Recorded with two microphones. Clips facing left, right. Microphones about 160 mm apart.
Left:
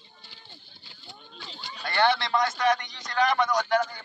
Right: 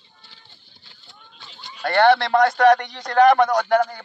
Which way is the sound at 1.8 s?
55° right (ahead or behind).